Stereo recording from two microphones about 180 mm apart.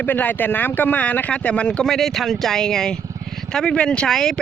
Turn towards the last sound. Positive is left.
turn(degrees=5)  # may be behind; listen again after turning